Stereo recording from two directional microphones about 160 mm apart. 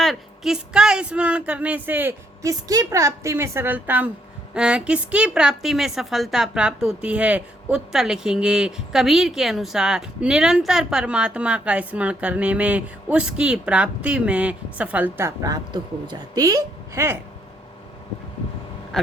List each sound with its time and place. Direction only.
0.0 s a woman's voice: centre (ahead or behind)
15.4 s a woman's voice: 20° right (ahead or behind)